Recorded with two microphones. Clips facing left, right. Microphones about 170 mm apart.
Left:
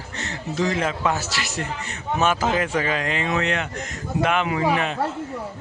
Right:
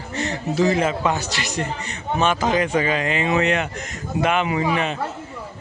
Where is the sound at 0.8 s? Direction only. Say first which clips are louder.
Right 2 dB; centre (ahead or behind).